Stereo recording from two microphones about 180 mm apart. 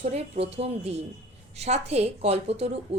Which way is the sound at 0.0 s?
35° right (ahead or behind).